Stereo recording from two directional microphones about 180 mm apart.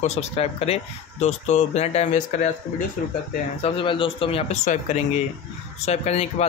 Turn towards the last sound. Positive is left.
turn(degrees=35)  # may be behind; listen again after turning